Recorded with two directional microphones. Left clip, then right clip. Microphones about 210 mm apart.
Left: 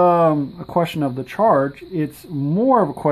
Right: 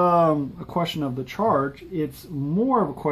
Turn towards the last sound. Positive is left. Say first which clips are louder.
# left 6 dB
turn(degrees=40)  # may be behind; listen again after turning